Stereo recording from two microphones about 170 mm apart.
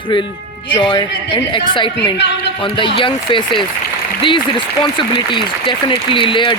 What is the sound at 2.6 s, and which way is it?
Speech, 30° left (ahead or behind).